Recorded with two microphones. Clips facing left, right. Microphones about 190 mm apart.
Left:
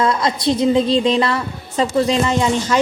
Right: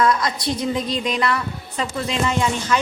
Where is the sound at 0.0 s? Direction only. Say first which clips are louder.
Left 2 dB; 25° left (ahead or behind).